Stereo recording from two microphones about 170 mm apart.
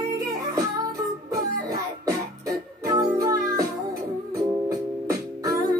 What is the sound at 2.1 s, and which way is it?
Music, 20° right (ahead or behind).